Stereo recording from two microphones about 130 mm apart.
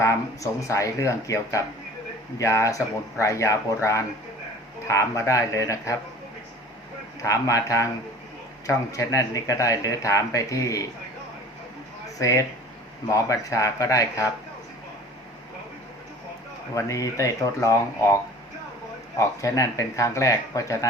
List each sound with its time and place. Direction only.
0.0 s speech: 25° left (ahead or behind)
7.2 s speech: 25° left (ahead or behind)
12.2 s speech: 25° left (ahead or behind)
16.7 s speech: 25° left (ahead or behind)
19.2 s speech: 25° left (ahead or behind)